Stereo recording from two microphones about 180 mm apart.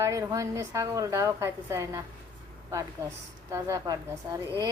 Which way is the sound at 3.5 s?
20° right (ahead or behind).